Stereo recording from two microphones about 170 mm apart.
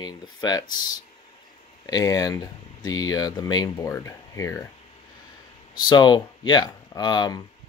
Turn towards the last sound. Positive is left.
turn(degrees=25)  # may be behind; listen again after turning